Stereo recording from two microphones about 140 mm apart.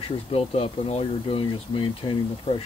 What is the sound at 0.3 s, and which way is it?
Speech, 45° left (ahead or behind).